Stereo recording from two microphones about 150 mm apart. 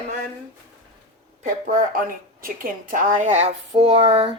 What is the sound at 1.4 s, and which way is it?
Speech, 60° right (ahead or behind).